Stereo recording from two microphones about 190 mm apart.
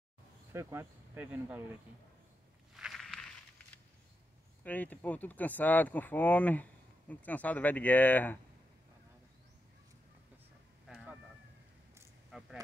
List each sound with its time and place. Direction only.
0.5 s speech: 15° right (ahead or behind)
2.7 s walk: centre (ahead or behind)
4.6 s speech: 10° left (ahead or behind)
10.9 s fowl: 5° right (ahead or behind)
12.3 s a sound: centre (ahead or behind)